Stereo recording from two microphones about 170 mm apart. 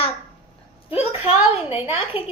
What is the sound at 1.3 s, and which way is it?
Speech, 35° left (ahead or behind).